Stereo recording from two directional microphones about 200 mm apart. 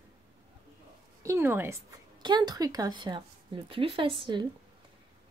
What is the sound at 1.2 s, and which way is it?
A woman's voice, 15° right (ahead or behind).